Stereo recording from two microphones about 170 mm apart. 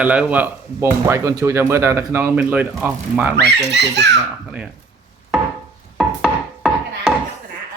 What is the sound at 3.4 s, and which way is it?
Speech, 85° right.